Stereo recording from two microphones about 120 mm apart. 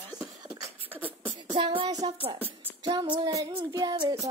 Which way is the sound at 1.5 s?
45° right (ahead or behind).